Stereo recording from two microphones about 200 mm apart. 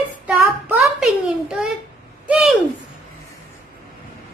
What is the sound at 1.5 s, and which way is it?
A child's voice, 5° right (ahead or behind).